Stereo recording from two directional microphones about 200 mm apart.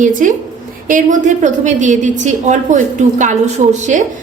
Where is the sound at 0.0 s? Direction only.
40° right (ahead or behind).